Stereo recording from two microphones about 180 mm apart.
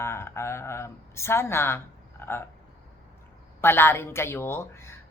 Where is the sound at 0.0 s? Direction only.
15° left (ahead or behind).